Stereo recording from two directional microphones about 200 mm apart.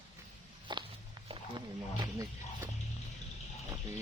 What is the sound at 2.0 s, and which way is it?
Wild animals, 15° right (ahead or behind).